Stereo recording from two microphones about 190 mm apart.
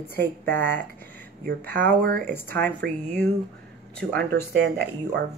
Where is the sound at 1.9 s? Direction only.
60° right (ahead or behind).